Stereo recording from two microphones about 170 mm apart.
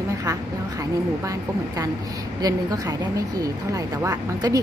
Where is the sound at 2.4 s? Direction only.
20° right (ahead or behind).